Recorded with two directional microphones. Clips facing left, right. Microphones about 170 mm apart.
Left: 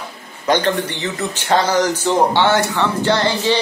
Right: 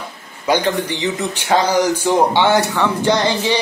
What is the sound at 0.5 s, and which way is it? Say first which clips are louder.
Speech: even; 10° right (ahead or behind).